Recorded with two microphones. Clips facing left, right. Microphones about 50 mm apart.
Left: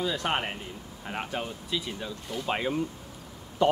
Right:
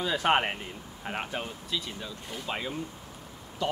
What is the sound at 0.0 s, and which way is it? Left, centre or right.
Speech, centre.